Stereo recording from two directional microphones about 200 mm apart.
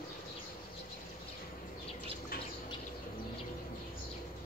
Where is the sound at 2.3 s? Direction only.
45° left (ahead or behind).